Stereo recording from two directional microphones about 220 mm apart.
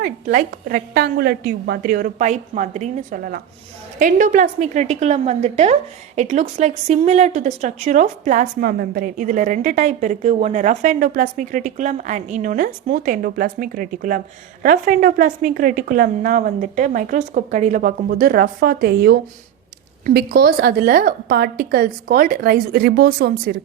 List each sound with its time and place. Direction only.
0.0 s a woman's voice: 40° right (ahead or behind)